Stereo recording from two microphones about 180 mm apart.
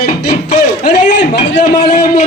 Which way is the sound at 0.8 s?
70° left (ahead or behind).